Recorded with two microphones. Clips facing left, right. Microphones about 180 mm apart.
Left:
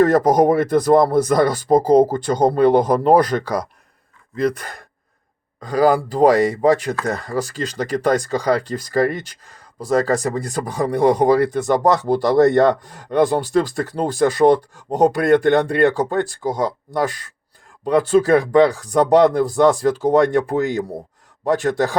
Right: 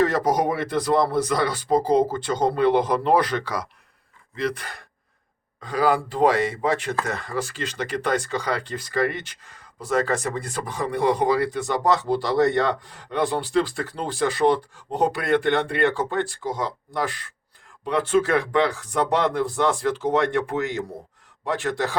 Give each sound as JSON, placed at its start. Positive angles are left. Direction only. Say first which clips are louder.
{"t": 0.0, "sound": "speech", "louder": "left 7 dB", "side_deg": 45}